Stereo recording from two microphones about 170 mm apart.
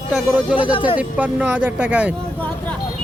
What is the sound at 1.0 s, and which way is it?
Speech, 10° right (ahead or behind).